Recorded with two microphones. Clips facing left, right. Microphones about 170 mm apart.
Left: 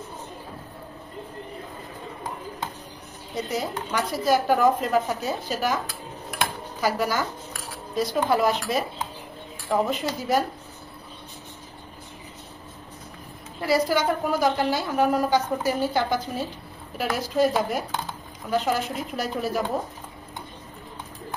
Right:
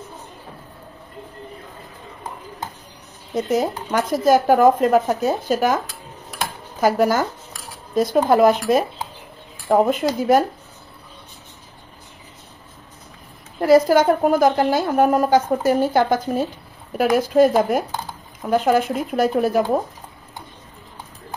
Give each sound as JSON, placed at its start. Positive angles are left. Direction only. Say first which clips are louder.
{"t": 3.3, "sound": "a woman's voice", "louder": "right 8 dB", "side_deg": -50}
{"t": 6.8, "sound": "a woman's voice", "louder": "right 7 dB", "side_deg": -50}
{"t": 13.6, "sound": "a woman's voice", "louder": "right 9 dB", "side_deg": -45}